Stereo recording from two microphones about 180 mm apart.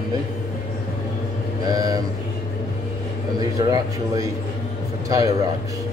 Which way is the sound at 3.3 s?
20° right (ahead or behind).